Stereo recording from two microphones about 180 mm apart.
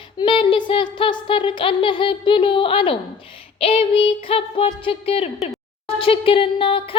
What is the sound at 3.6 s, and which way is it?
Child singing, 30° left (ahead or behind).